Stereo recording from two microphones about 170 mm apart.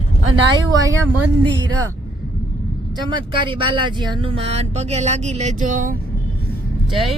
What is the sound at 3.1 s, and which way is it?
Speech, 30° right (ahead or behind).